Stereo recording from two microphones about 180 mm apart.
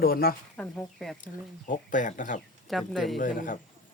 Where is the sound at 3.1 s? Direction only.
50° left (ahead or behind).